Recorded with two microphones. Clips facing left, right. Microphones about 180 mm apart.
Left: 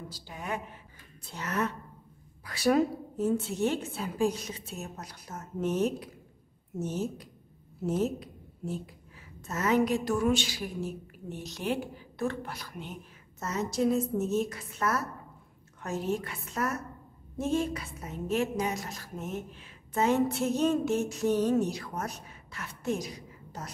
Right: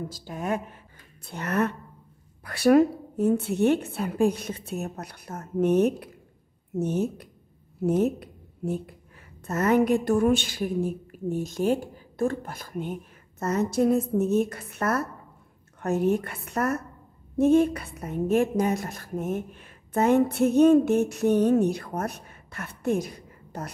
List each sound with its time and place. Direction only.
0.1 s a woman's voice: 45° right (ahead or behind)